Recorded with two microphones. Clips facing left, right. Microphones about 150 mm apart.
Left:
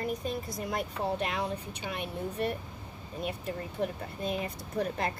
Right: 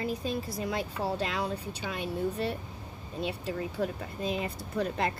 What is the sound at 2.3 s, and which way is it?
A woman's voice, 30° right (ahead or behind).